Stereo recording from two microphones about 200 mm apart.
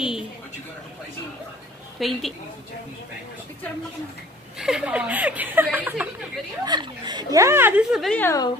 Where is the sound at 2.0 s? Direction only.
Centre (ahead or behind).